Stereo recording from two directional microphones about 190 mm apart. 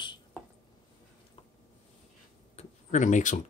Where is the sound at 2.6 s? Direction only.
40° left (ahead or behind).